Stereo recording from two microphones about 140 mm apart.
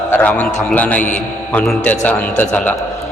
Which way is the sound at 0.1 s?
10° left (ahead or behind).